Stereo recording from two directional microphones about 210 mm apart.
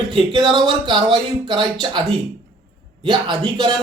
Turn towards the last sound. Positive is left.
turn(degrees=-20)  # may be behind; listen again after turning